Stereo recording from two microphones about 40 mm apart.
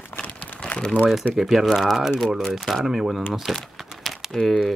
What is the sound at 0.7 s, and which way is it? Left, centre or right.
Speech, left.